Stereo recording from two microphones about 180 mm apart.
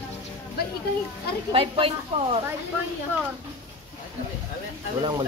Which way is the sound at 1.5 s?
30° right (ahead or behind).